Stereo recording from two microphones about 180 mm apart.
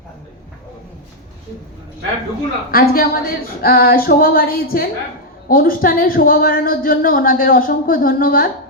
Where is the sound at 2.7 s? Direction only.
55° left (ahead or behind).